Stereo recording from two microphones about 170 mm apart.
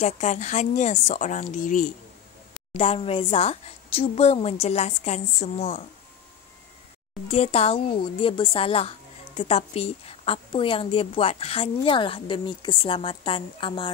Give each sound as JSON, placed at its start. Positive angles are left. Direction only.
{"t": 0.0, "sound": "speech", "side_deg": 45}
{"t": 2.7, "sound": "a woman's voice", "side_deg": 35}
{"t": 7.2, "sound": "a woman's voice", "side_deg": 40}